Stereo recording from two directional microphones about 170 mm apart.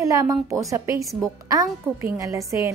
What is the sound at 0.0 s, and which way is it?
A woman's voice, 20° right (ahead or behind).